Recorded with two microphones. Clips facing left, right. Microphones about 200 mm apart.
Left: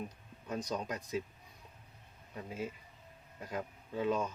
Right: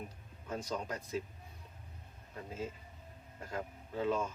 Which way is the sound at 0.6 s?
15° left (ahead or behind).